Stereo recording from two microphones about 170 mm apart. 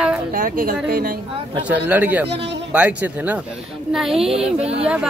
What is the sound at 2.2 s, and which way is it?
Speech, 90° right.